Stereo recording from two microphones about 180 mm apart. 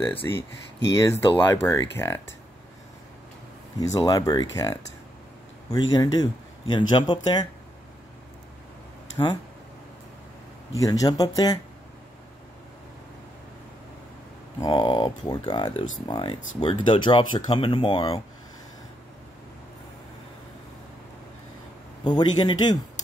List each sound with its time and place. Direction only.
0.2 s speech: 20° left (ahead or behind)
3.8 s speech: 20° left (ahead or behind)
9.2 s speech: 20° left (ahead or behind)
10.8 s speech: 20° left (ahead or behind)
14.6 s speech: 25° left (ahead or behind)
22.0 s speech: 25° left (ahead or behind)